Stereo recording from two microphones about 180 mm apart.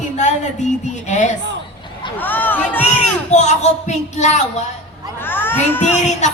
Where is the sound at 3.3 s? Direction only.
40° left (ahead or behind).